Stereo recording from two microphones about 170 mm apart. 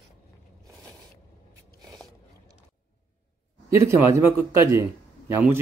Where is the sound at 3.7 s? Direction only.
15° right (ahead or behind).